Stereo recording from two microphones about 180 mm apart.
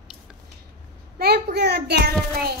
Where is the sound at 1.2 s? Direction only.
60° right (ahead or behind).